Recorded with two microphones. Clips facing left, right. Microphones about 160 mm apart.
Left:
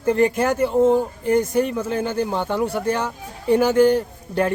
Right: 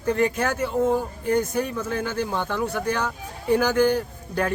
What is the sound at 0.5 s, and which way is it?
Speech, 25° left (ahead or behind).